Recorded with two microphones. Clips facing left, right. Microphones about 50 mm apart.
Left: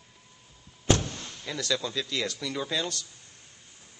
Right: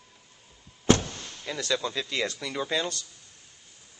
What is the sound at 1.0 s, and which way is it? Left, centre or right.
Speech, centre.